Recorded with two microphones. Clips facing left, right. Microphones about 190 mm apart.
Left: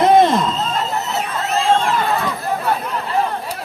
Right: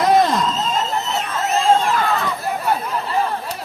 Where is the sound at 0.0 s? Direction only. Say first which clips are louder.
Left 3 dB; 25° left (ahead or behind).